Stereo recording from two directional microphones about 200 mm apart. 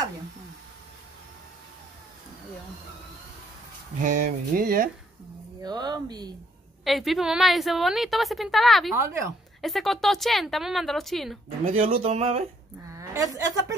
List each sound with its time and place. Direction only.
4.0 s speech: 40° right (ahead or behind)
5.6 s speech: 20° right (ahead or behind)
6.8 s a woman's voice: centre (ahead or behind)
11.6 s speech: 30° right (ahead or behind)
12.9 s a woman's voice: 15° right (ahead or behind)